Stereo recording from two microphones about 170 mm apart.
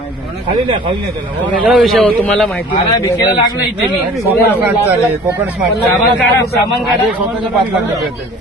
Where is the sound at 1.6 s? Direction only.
5° right (ahead or behind).